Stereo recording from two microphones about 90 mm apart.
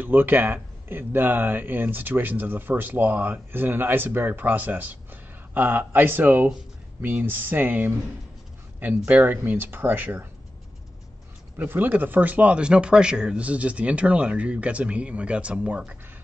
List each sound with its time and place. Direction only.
0.0 s speech: 20° right (ahead or behind)
11.5 s speech: 20° right (ahead or behind)